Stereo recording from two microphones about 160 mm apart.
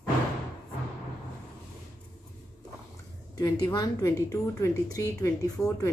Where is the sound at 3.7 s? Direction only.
20° left (ahead or behind).